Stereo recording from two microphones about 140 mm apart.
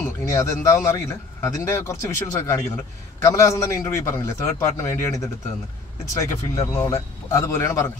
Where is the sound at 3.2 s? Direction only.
20° left (ahead or behind).